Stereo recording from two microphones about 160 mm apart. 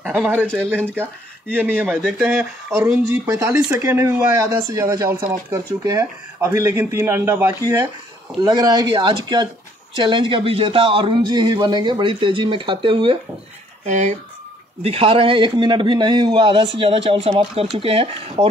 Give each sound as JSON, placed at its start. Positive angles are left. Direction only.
{"t": 0.1, "sound": "speech", "side_deg": -10}
{"t": 0.5, "sound": "speech", "side_deg": 5}
{"t": 1.5, "sound": "speech", "side_deg": -15}
{"t": 2.0, "sound": "speech", "side_deg": 0}
{"t": 3.1, "sound": "a man's voice", "side_deg": -20}
{"t": 13.8, "sound": "a man's voice", "side_deg": -45}